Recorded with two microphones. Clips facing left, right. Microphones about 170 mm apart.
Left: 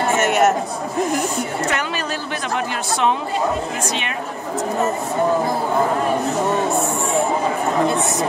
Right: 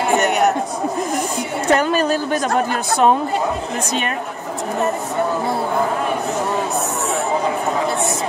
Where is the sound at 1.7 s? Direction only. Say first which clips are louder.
Right 8 dB; 40° right (ahead or behind).